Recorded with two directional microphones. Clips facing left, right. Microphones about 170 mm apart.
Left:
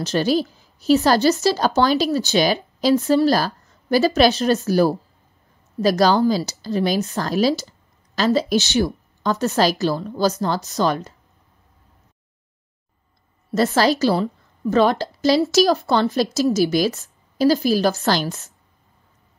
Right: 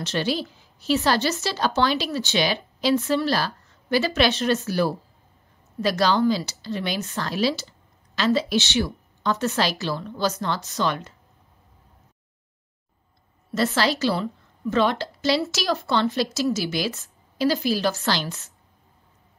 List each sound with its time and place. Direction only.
0.0 s speech: 40° left (ahead or behind)
13.6 s a woman's voice: 40° left (ahead or behind)